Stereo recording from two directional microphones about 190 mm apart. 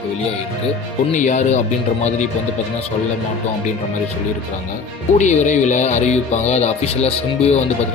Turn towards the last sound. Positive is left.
turn(degrees=35)  # may be behind; listen again after turning